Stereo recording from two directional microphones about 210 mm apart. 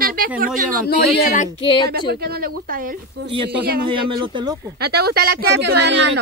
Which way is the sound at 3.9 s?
25° right (ahead or behind).